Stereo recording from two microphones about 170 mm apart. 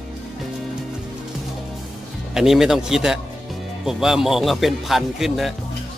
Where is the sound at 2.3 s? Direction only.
5° right (ahead or behind).